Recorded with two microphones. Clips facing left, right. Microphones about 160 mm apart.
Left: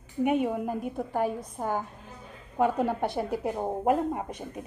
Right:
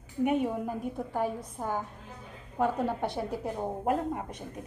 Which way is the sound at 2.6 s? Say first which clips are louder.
Left 3 dB; 10° left (ahead or behind).